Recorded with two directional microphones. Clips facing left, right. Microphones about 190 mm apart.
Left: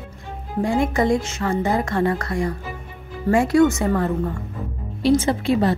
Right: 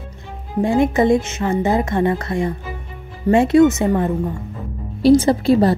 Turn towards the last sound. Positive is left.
turn(degrees=-35)  # may be behind; listen again after turning